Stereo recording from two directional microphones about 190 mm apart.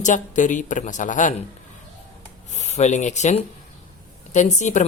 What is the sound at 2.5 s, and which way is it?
Speech, 35° left (ahead or behind).